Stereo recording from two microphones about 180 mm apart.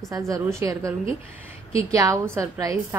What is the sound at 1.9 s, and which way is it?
Speech, 15° right (ahead or behind).